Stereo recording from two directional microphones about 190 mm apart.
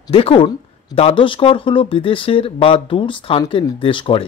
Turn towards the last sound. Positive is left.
turn(degrees=25)  # may be behind; listen again after turning